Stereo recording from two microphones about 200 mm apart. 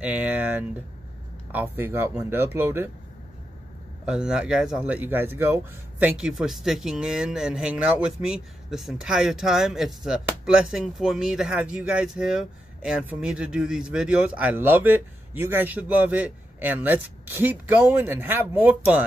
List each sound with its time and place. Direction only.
0.0 s speech: 10° right (ahead or behind)
4.0 s speech: 5° right (ahead or behind)